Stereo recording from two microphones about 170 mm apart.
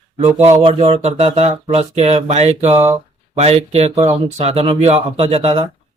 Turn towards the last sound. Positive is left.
turn(degrees=-35)  # may be behind; listen again after turning